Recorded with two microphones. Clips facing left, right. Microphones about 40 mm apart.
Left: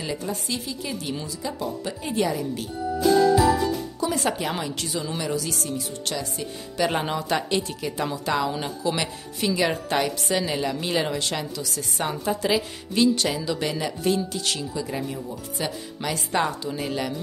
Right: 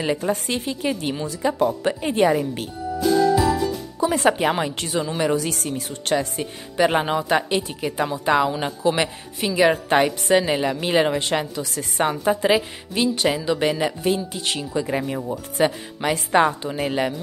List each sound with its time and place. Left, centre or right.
0.0 s speech: right
3.0 s jingle: centre
4.0 s speech: right
6.9 s a woman's voice: right
8.8 s a woman's voice: right